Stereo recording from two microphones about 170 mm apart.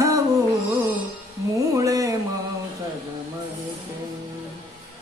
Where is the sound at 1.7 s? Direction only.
20° right (ahead or behind).